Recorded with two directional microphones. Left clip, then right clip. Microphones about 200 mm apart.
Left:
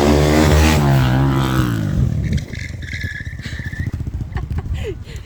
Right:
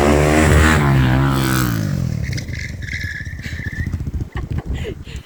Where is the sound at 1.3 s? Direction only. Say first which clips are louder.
Right 1 dB; 50° right (ahead or behind).